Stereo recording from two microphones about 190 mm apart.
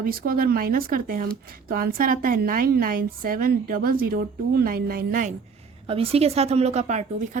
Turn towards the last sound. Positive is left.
turn(degrees=-35)  # may be behind; listen again after turning